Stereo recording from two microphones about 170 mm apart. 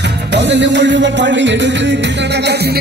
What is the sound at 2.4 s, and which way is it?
Music, 70° right (ahead or behind).